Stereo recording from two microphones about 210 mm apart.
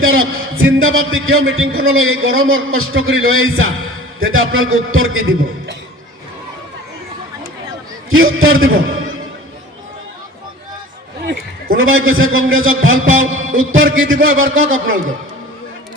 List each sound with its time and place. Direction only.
0.0 s a man's voice: 75° right (ahead or behind)
8.1 s a man's voice: 75° right (ahead or behind)
11.8 s a man's voice: 75° right (ahead or behind)